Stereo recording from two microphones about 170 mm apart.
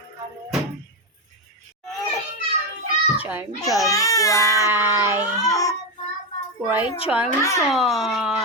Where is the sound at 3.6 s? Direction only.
20° left (ahead or behind).